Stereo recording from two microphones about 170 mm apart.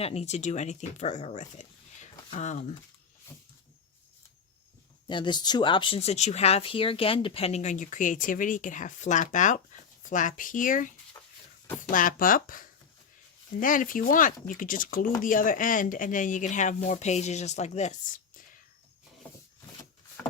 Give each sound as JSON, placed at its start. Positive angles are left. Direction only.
{"t": 0.0, "sound": "speech", "side_deg": 40}
{"t": 5.0, "sound": "speech", "side_deg": 25}